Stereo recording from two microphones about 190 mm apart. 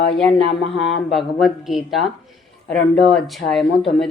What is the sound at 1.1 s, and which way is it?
Speech, centre (ahead or behind).